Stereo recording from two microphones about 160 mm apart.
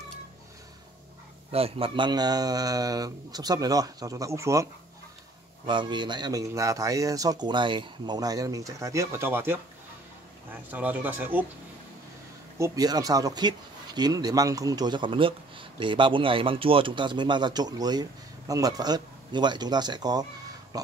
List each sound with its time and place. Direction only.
1.5 s speech: 35° right (ahead or behind); by 4.6 s 20° right (ahead or behind)
5.7 s speech: 30° right (ahead or behind); by 11.4 s 10° right (ahead or behind)
12.5 s speech: 20° right (ahead or behind)
20.7 s a sound: 25° right (ahead or behind)